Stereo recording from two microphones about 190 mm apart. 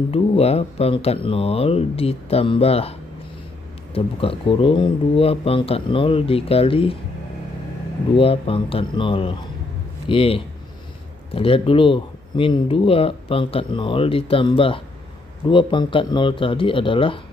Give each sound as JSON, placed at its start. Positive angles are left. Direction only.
{"t": 0.1, "sound": "speech", "side_deg": 30}
{"t": 8.2, "sound": "speech", "side_deg": 30}